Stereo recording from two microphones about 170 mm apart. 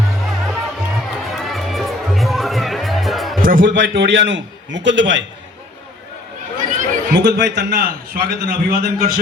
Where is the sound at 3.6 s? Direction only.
90° right.